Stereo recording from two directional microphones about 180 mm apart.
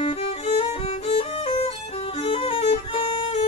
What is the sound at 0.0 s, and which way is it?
Violin, 30° left (ahead or behind).